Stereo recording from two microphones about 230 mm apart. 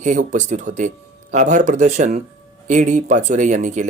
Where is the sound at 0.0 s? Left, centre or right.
Right.